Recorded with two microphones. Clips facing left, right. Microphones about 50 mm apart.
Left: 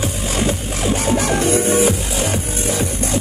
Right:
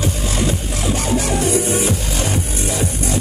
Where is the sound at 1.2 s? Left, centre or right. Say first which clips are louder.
Left 2 dB; left.